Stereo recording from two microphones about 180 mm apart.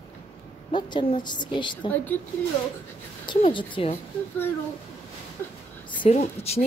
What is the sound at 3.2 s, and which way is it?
Speech, 25° left (ahead or behind).